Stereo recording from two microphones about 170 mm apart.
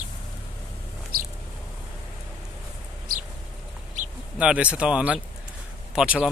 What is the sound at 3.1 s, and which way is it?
Bird, 55° right (ahead or behind).